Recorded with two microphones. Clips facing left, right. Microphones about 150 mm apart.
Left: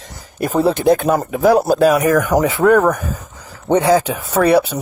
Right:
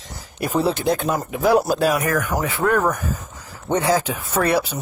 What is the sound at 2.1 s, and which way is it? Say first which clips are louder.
Speech: left 8 dB; 90° left.